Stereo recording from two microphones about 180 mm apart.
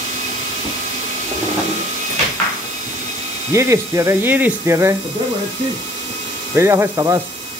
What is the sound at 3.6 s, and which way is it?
Speech, 15° right (ahead or behind).